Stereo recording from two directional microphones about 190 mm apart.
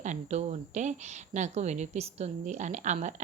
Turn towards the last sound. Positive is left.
turn(degrees=-40)  # may be behind; listen again after turning